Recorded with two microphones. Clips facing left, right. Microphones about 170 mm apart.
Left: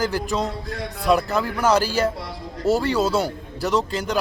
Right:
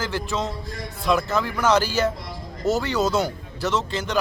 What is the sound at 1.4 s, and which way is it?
Speech, 10° left (ahead or behind).